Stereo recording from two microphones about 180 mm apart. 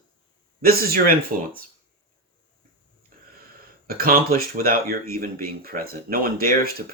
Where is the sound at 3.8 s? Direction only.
55° right (ahead or behind).